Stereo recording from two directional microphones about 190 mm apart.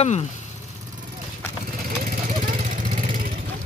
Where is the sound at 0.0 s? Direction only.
35° left (ahead or behind).